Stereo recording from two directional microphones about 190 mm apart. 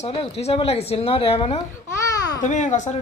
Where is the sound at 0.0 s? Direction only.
30° left (ahead or behind).